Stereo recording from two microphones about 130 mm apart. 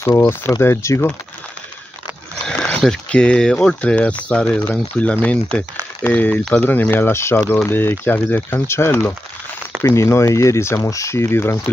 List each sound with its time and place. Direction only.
0.0 s speech: 20° left (ahead or behind)
2.4 s boat: 10° left (ahead or behind)
2.8 s speech: 5° left (ahead or behind)